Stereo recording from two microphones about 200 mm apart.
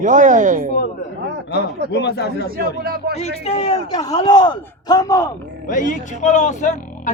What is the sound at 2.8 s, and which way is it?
Speech, 50° right (ahead or behind).